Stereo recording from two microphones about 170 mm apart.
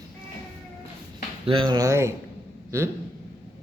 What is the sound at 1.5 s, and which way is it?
A man's voice, 25° right (ahead or behind).